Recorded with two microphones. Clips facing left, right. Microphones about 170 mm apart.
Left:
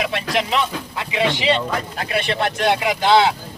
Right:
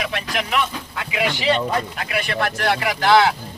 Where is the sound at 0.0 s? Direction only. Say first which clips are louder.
Left 4 dB; 30° left (ahead or behind).